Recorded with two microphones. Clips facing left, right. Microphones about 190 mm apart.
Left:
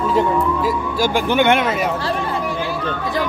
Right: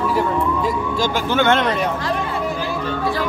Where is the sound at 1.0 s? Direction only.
15° left (ahead or behind).